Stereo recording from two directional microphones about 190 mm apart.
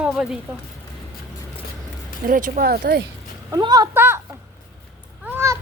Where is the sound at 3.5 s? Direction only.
20° right (ahead or behind).